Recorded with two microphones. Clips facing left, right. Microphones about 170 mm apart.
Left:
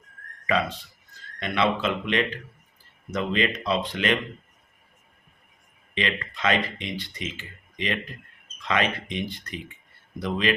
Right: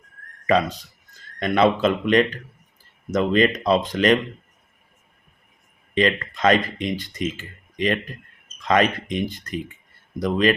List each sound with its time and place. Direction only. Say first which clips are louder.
0.4 s speech: right 6 dB; 40° right (ahead or behind)
5.9 s speech: right 8 dB; 45° right (ahead or behind)